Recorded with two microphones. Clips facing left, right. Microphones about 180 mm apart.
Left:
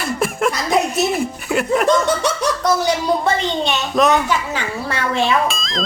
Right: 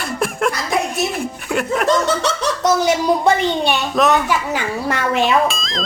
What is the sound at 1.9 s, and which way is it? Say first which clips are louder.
Speech: left 1 dB; 15° left (ahead or behind).